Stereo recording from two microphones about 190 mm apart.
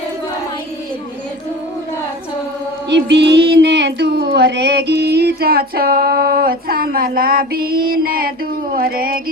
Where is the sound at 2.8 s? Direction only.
65° right (ahead or behind).